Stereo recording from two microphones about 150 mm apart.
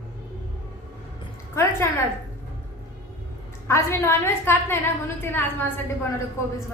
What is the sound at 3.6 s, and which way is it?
A woman's voice, 20° left (ahead or behind).